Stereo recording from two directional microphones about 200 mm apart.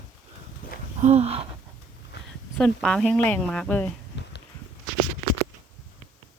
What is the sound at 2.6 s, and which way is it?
Speech, 5° left (ahead or behind).